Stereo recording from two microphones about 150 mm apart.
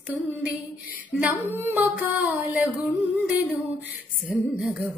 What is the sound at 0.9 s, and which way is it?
Speech, 10° right (ahead or behind).